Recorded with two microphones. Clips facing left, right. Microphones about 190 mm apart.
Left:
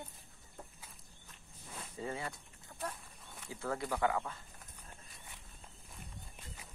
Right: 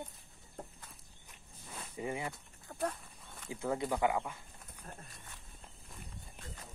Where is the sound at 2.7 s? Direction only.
55° right (ahead or behind).